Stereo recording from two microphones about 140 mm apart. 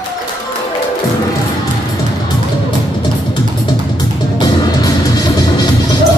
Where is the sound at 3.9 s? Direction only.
30° left (ahead or behind).